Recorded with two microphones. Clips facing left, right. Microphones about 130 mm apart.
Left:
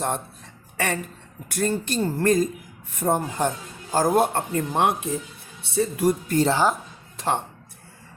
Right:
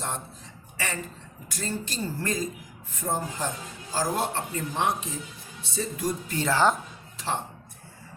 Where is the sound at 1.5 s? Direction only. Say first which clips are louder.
Left 8 dB; 60° left (ahead or behind).